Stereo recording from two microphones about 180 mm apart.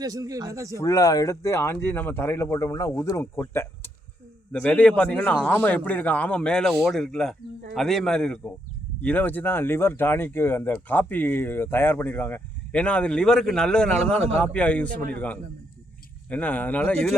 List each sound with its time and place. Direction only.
0.0 s speech: 20° right (ahead or behind)
0.8 s a man's voice: 20° left (ahead or behind)
16.3 s speech: 10° left (ahead or behind)